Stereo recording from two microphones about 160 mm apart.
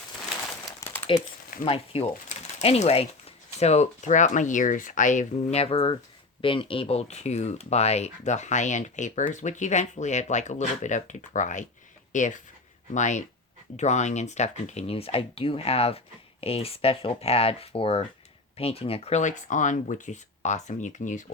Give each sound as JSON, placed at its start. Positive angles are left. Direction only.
{"t": 1.1, "sound": "speech", "side_deg": 30}